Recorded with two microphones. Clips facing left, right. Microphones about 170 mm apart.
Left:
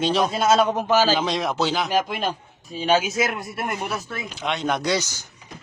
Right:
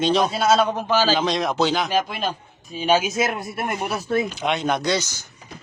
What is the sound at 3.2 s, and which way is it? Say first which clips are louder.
Speech: right 1 dB; 25° right (ahead or behind).